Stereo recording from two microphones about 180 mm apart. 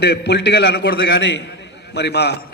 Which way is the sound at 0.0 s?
65° left (ahead or behind).